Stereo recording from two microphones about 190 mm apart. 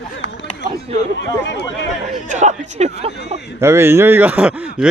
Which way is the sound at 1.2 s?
65° left (ahead or behind).